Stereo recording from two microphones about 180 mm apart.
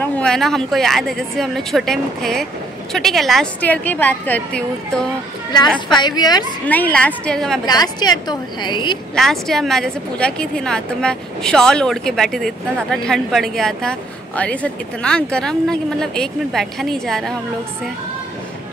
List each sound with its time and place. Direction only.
0.0 s a woman's voice: 5° left (ahead or behind)
5.9 s a woman's voice: 25° left (ahead or behind)
6.6 s a woman's voice: 10° left (ahead or behind)
7.6 s a woman's voice: 20° left (ahead or behind)
9.1 s a woman's voice: centre (ahead or behind)